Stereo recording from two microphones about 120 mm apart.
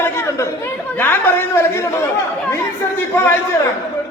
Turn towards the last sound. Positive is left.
turn(degrees=20)  # may be behind; listen again after turning